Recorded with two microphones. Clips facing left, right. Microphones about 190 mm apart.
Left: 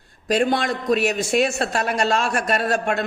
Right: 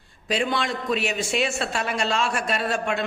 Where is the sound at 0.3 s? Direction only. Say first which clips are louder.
Left 5 dB; 45° left (ahead or behind).